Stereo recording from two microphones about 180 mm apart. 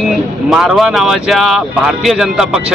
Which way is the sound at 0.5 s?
Centre (ahead or behind).